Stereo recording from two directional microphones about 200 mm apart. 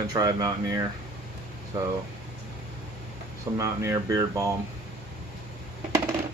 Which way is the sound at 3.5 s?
15° right (ahead or behind).